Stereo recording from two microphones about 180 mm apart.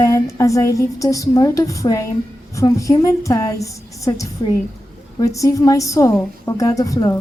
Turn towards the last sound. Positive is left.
turn(degrees=20)  # may be behind; listen again after turning